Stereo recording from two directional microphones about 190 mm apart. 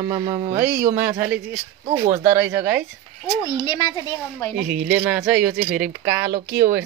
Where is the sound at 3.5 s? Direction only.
20° left (ahead or behind).